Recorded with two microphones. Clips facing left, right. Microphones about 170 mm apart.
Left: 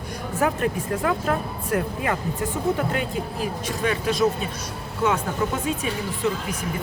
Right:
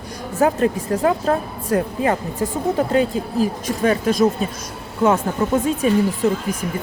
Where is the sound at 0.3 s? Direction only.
35° right (ahead or behind).